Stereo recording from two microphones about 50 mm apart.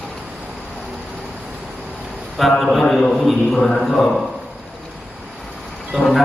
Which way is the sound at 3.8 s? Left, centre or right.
Centre.